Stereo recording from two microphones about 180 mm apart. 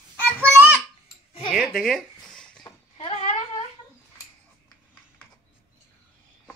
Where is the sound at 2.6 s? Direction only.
35° left (ahead or behind).